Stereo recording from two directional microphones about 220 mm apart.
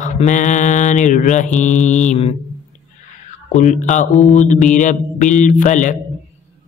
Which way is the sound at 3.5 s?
35° left (ahead or behind).